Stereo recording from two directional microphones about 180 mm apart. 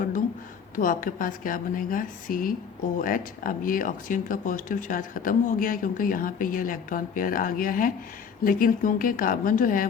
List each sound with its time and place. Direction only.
0.8 s speech: 50° left (ahead or behind)